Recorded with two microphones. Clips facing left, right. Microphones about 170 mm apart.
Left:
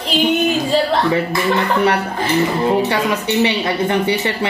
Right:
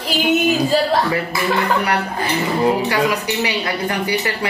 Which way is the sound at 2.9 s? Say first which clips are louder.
Left 1 dB; 25° left (ahead or behind).